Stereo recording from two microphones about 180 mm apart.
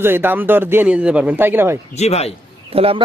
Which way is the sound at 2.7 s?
30° right (ahead or behind).